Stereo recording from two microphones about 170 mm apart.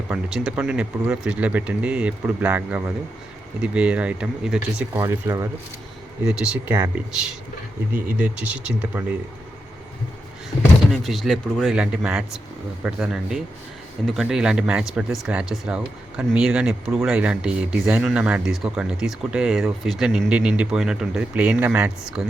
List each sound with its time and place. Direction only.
0.1 s speech: 5° right (ahead or behind)
4.9 s speech: 15° right (ahead or behind)
6.2 s speech: 5° right (ahead or behind)
10.9 s speech: centre (ahead or behind)